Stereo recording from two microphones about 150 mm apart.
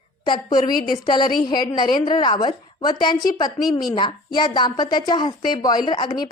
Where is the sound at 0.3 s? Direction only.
30° left (ahead or behind).